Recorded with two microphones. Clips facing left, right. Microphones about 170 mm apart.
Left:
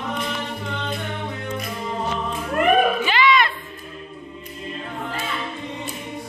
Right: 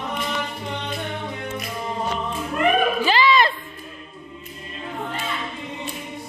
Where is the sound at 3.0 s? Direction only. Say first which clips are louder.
Right 1 dB; 35° right (ahead or behind).